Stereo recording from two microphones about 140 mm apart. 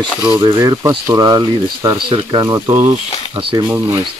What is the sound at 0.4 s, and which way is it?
Speech, 25° right (ahead or behind).